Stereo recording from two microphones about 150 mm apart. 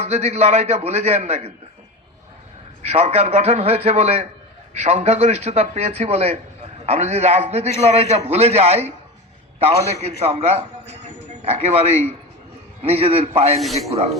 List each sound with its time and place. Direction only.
0.0 s a man's voice: 45° right (ahead or behind)
2.8 s a man's voice: 45° right (ahead or behind)